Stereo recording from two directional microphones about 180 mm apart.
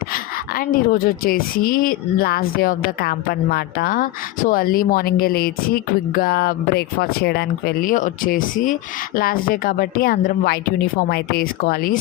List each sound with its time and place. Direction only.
0.1 s a woman's voice: 55° left (ahead or behind)